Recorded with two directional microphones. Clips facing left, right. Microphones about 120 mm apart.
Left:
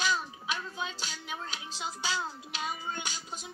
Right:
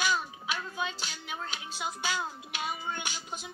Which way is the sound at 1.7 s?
15° right (ahead or behind).